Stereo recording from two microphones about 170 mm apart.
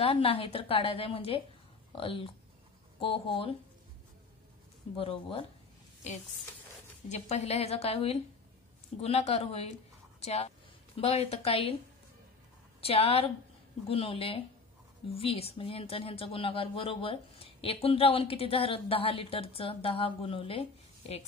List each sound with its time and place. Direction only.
0.0 s speech: 35° left (ahead or behind)
4.9 s speech: 35° left (ahead or behind)
7.1 s speech: 40° left (ahead or behind)
12.8 s speech: 35° left (ahead or behind)